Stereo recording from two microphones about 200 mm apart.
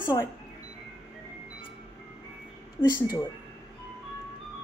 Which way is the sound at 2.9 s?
20° left (ahead or behind).